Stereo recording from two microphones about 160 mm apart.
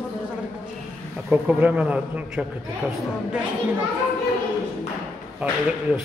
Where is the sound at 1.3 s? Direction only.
10° right (ahead or behind).